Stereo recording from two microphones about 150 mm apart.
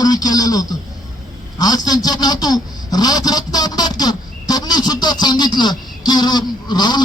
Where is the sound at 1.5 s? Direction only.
25° left (ahead or behind).